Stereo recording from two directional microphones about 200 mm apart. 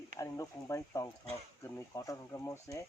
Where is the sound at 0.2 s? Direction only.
15° left (ahead or behind).